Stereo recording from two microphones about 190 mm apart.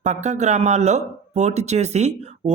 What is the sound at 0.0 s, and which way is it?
Speech, 40° right (ahead or behind).